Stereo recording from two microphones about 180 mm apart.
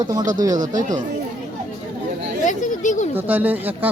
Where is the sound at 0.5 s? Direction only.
45° right (ahead or behind).